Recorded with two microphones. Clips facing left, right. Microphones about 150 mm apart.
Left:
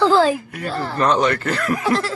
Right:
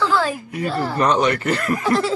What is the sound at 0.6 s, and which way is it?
Speech, 5° right (ahead or behind).